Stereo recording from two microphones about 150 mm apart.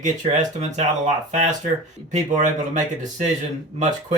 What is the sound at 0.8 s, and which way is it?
Speech, 50° right (ahead or behind).